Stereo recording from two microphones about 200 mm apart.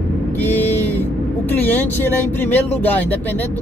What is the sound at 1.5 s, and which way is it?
Speech, 10° left (ahead or behind).